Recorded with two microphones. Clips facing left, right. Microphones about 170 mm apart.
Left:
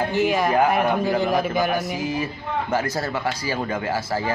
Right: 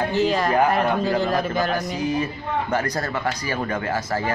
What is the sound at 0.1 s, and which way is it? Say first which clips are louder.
Speech: even; 15° left (ahead or behind).